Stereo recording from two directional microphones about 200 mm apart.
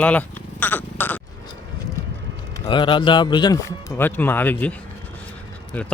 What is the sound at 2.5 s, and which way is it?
Speech, 25° left (ahead or behind).